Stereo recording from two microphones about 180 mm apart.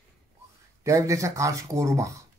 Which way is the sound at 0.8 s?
15° right (ahead or behind).